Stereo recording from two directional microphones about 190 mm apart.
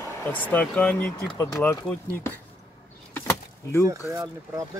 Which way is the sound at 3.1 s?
10° left (ahead or behind).